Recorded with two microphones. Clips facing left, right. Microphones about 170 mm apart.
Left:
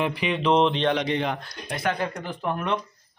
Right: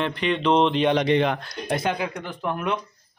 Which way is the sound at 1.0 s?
75° right (ahead or behind).